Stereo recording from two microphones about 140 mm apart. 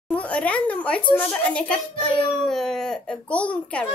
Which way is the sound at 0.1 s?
10° left (ahead or behind).